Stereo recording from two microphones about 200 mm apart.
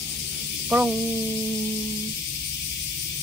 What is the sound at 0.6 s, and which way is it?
Speech, 5° right (ahead or behind).